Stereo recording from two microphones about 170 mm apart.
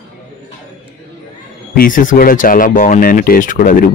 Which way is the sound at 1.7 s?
55° left (ahead or behind).